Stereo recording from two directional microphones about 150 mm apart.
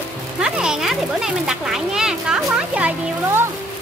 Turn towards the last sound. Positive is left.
turn(degrees=-10)  # may be behind; listen again after turning